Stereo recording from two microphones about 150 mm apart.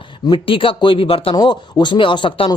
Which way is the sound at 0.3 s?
35° left (ahead or behind).